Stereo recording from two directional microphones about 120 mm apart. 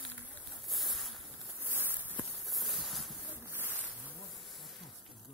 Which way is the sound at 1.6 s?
15° right (ahead or behind).